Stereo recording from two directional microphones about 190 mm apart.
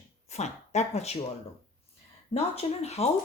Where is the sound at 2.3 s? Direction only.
35° left (ahead or behind).